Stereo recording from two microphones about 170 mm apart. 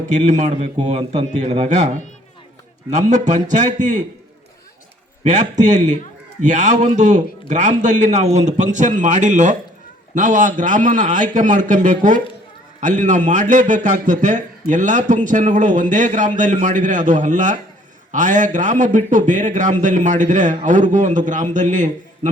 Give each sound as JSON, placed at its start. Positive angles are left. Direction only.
{"t": 0.1, "sound": "a man's voice", "side_deg": -45}
{"t": 5.2, "sound": "a man's voice", "side_deg": -45}